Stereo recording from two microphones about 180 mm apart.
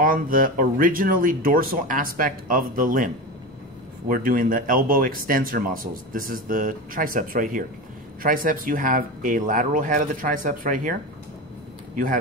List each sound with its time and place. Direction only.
0.0 s speech: 50° right (ahead or behind)
4.1 s speech: 50° right (ahead or behind)